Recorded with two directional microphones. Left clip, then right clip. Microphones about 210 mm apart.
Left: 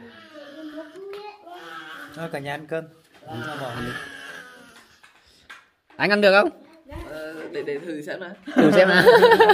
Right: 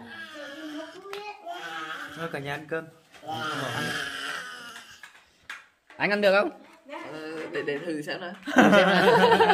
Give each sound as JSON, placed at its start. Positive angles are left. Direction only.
{"t": 2.1, "sound": "speech", "side_deg": 35}
{"t": 4.2, "sound": "a sound", "side_deg": -45}
{"t": 5.9, "sound": "speech", "side_deg": 35}
{"t": 7.2, "sound": "speech", "side_deg": 10}
{"t": 8.5, "sound": "speech", "side_deg": -55}
{"t": 8.7, "sound": "speech", "side_deg": 35}